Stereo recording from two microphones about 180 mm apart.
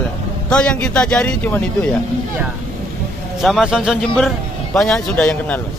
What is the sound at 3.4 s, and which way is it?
Speech, centre (ahead or behind).